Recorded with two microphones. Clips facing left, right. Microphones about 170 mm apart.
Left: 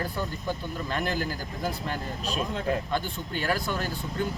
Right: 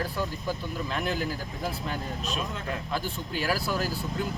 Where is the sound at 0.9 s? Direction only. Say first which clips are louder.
Left 1 dB; centre (ahead or behind).